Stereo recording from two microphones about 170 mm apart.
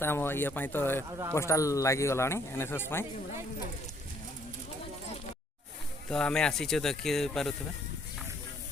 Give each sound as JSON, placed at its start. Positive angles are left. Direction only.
{"t": 0.0, "sound": "speech", "side_deg": 15}
{"t": 6.1, "sound": "speech", "side_deg": 5}